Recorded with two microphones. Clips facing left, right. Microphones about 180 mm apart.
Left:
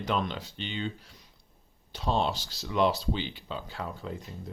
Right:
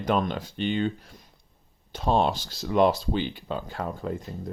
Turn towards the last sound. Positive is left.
turn(degrees=-50)  # may be behind; listen again after turning